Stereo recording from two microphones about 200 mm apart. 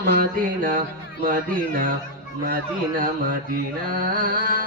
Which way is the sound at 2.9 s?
45° right (ahead or behind).